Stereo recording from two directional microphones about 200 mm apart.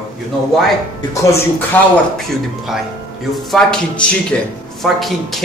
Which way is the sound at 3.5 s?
5° left (ahead or behind).